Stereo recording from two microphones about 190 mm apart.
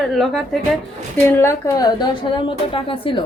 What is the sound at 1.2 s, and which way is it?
A woman's voice, 15° left (ahead or behind).